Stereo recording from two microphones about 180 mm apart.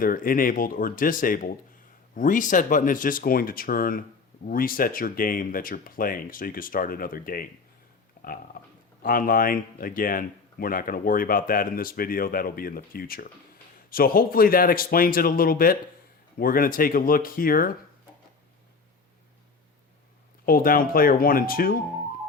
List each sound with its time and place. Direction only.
0.0 s speech: 50° left (ahead or behind)
8.2 s a sound: 50° left (ahead or behind)
9.0 s speech: 50° left (ahead or behind)
20.4 s speech: 55° left (ahead or behind)